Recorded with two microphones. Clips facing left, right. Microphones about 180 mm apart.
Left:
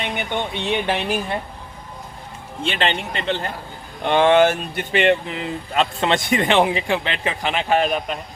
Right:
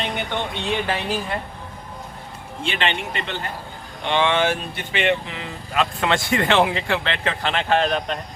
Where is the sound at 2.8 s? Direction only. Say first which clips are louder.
Left 1 dB; 35° left (ahead or behind).